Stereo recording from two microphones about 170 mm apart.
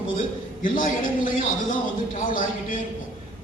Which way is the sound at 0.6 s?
55° left (ahead or behind).